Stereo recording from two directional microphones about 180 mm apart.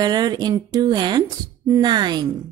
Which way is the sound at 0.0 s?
20° right (ahead or behind).